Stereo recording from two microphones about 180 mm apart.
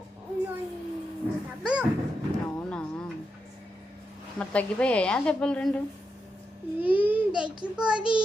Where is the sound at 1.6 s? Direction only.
5° right (ahead or behind).